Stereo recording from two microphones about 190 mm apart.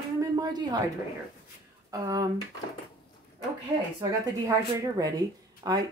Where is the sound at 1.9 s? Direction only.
20° right (ahead or behind).